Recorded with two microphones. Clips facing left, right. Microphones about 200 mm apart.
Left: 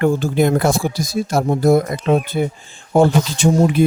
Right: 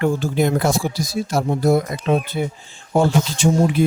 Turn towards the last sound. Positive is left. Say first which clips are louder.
# left 2 dB
turn(degrees=55)  # may be behind; listen again after turning